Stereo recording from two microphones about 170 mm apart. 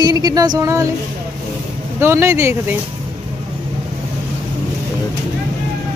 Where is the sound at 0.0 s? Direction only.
20° right (ahead or behind).